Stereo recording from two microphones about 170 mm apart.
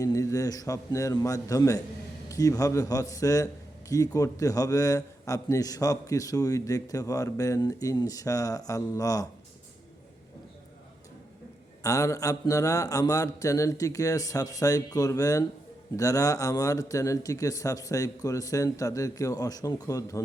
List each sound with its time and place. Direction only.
0.0 s a man's voice: 20° left (ahead or behind)
11.8 s a man's voice: 20° left (ahead or behind)